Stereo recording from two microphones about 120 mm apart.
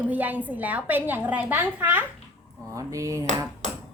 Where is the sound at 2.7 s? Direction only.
25° right (ahead or behind).